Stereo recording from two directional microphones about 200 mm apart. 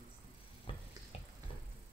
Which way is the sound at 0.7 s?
25° left (ahead or behind).